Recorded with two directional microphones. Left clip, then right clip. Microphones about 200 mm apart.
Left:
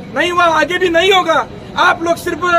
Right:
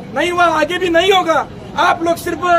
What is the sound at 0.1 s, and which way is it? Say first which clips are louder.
A man's voice: left 1 dB; centre (ahead or behind).